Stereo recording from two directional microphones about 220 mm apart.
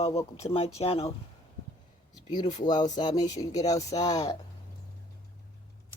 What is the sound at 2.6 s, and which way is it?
Speech, 20° left (ahead or behind).